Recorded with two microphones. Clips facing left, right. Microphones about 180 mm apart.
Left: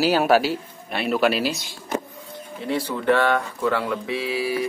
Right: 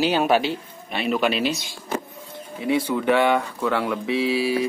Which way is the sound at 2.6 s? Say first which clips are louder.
Right 1 dB; 10° right (ahead or behind).